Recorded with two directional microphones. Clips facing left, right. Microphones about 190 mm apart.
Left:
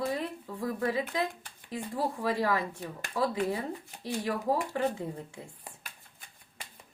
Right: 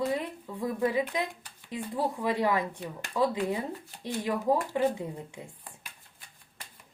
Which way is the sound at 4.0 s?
15° right (ahead or behind).